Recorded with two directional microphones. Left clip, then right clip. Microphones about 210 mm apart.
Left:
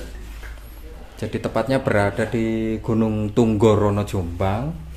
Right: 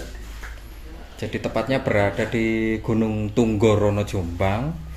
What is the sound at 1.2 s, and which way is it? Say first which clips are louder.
Speech: left 2 dB; 20° left (ahead or behind).